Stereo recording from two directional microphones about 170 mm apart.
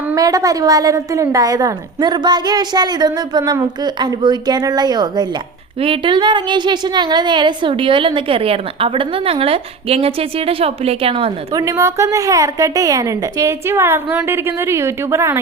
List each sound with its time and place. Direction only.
0.2 s a woman's voice: 20° right (ahead or behind)
11.5 s a woman's voice: 20° right (ahead or behind)